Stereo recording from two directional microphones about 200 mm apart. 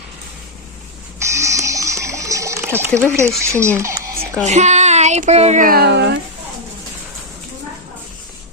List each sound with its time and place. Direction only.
1.2 s water: 15° right (ahead or behind)
3.2 s speech: 15° right (ahead or behind)
3.8 s a sound: 15° right (ahead or behind)
4.4 s speech: 35° right (ahead or behind); by 6.1 s 55° right (ahead or behind)